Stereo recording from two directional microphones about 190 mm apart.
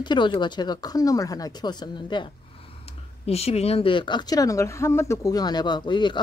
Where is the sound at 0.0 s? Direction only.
25° left (ahead or behind).